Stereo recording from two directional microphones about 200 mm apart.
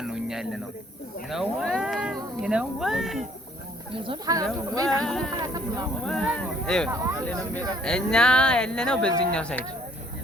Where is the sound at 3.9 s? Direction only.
25° right (ahead or behind).